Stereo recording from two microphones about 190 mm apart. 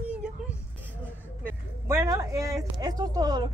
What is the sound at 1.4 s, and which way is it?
A woman's voice, 15° right (ahead or behind).